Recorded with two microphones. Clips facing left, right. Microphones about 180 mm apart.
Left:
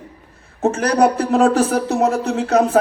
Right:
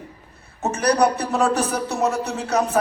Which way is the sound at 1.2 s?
75° left (ahead or behind).